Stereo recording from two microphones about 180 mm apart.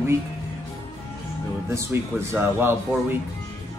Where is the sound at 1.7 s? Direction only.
15° right (ahead or behind).